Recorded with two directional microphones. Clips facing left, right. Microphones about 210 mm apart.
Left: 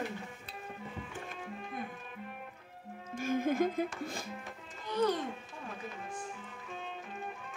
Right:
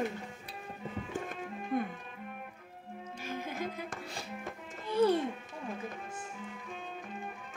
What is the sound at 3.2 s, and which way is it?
Music, 50° left (ahead or behind).